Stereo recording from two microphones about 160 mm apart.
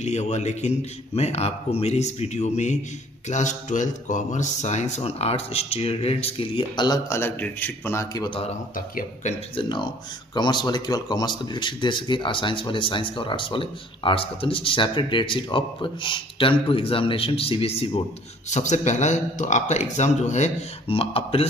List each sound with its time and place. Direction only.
0.0 s a man's voice: 45° left (ahead or behind)
7.1 s a man's voice: 15° left (ahead or behind)
8.7 s speech: 60° left (ahead or behind)
9.6 s speech: 30° left (ahead or behind)
18.5 s a man's voice: 45° left (ahead or behind)